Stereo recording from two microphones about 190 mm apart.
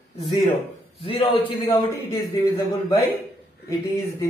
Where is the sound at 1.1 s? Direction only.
30° left (ahead or behind).